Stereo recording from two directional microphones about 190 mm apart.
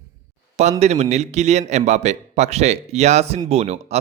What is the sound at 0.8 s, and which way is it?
A man's voice, 35° right (ahead or behind).